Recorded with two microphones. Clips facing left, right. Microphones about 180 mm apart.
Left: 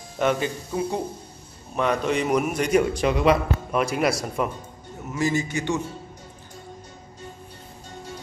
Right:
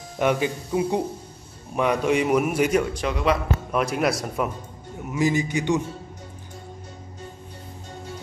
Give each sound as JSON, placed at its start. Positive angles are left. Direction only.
{"t": 0.2, "sound": "a man's voice", "side_deg": -15}
{"t": 2.8, "sound": "a man's voice", "side_deg": 5}
{"t": 5.0, "sound": "a man's voice", "side_deg": -15}